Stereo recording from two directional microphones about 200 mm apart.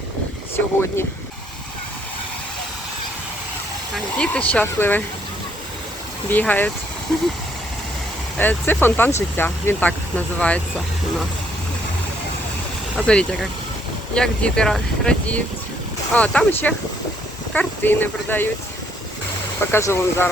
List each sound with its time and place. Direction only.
0.5 s speech: 10° left (ahead or behind)
3.9 s speech: 5° left (ahead or behind)
6.3 s speech: 10° left (ahead or behind)
8.4 s speech: 10° left (ahead or behind)
13.0 s speech: 5° left (ahead or behind)
19.7 s speech: 10° left (ahead or behind)